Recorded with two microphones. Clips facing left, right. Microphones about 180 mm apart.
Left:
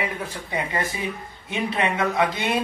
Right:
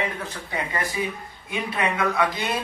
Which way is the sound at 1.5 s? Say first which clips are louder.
Left 2 dB; 25° left (ahead or behind).